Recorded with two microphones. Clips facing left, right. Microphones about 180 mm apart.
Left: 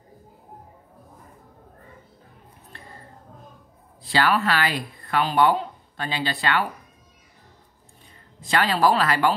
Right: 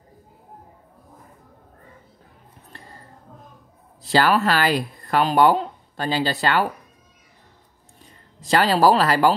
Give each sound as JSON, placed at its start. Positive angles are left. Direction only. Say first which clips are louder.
{"t": 4.1, "sound": "speech", "louder": "right 3 dB", "side_deg": -40}
{"t": 8.5, "sound": "speech", "louder": "right 4 dB", "side_deg": -35}